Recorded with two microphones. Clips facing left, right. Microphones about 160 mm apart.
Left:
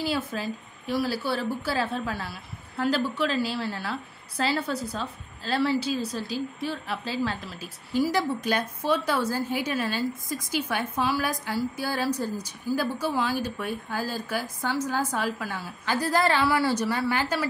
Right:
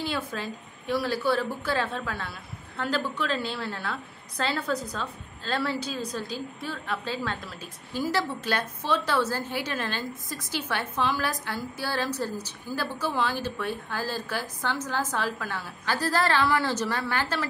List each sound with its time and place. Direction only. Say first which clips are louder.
0.0 s a woman's voice: left 3 dB; 5° left (ahead or behind)